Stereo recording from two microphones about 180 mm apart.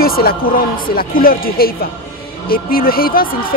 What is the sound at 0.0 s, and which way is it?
Speech, 55° left (ahead or behind).